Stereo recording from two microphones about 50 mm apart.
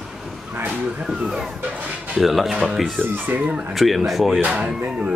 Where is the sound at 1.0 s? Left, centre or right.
Centre.